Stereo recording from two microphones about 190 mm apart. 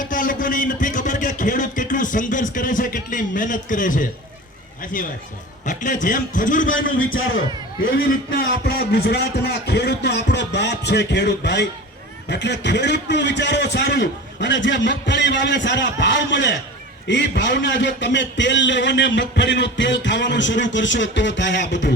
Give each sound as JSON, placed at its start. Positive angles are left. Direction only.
{"t": 0.0, "sound": "a sound", "side_deg": 45}
{"t": 4.8, "sound": "a man's voice", "side_deg": 45}
{"t": 8.4, "sound": "a man's voice", "side_deg": 55}